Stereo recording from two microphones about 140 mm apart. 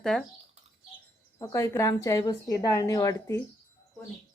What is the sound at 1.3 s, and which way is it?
Speech, 20° left (ahead or behind).